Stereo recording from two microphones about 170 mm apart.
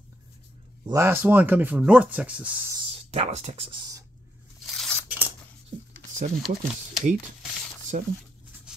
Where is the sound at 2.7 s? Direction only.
30° right (ahead or behind).